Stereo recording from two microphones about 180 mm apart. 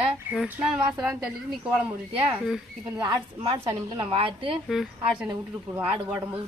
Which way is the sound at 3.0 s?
30° right (ahead or behind).